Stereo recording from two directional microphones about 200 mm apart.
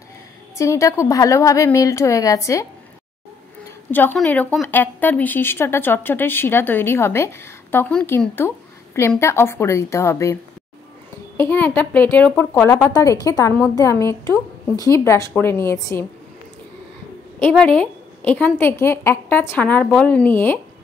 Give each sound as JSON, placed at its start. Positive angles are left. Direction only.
{"t": 0.6, "sound": "speech", "side_deg": 15}
{"t": 3.9, "sound": "speech", "side_deg": 10}
{"t": 17.4, "sound": "speech", "side_deg": 5}